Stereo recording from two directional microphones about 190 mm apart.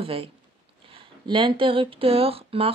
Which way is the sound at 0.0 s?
30° right (ahead or behind).